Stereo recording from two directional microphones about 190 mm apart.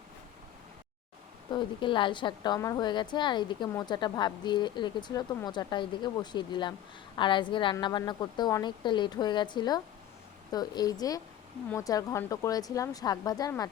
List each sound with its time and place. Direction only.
1.5 s a woman's voice: 25° left (ahead or behind)